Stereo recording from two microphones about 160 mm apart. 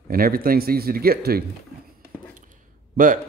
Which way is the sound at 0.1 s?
65° right (ahead or behind).